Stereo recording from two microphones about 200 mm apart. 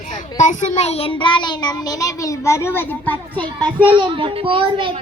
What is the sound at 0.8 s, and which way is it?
Child singing, 30° left (ahead or behind).